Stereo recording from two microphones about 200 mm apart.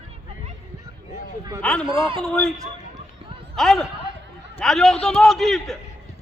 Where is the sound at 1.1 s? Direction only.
15° right (ahead or behind).